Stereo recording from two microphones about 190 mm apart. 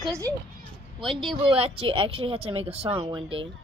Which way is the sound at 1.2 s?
30° right (ahead or behind).